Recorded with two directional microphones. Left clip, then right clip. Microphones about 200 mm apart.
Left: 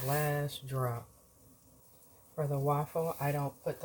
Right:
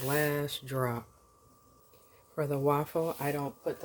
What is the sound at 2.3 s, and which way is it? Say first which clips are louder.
Speech: right 4 dB; 50° right (ahead or behind).